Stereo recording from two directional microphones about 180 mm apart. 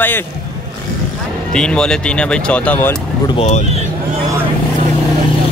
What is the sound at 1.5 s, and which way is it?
Speech, 5° left (ahead or behind).